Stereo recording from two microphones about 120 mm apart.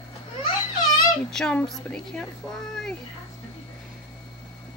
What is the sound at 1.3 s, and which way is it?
Speech, 5° left (ahead or behind).